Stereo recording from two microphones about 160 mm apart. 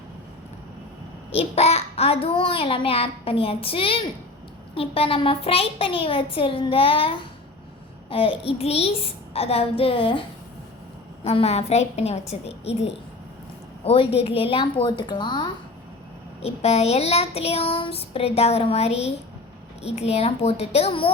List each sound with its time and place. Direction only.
1.3 s a child's voice: 40° left (ahead or behind)
16.4 s a child's voice: 40° left (ahead or behind)